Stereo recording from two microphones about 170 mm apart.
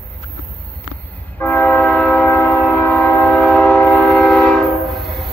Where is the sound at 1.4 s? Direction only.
10° left (ahead or behind).